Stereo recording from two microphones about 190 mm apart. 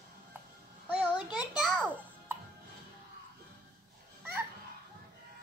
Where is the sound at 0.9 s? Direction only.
5° right (ahead or behind).